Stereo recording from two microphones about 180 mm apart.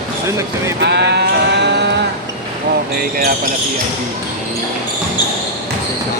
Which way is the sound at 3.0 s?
55° right (ahead or behind).